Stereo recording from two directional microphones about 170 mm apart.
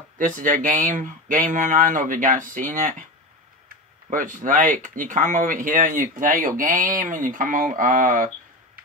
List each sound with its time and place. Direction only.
0.2 s speech: 50° right (ahead or behind)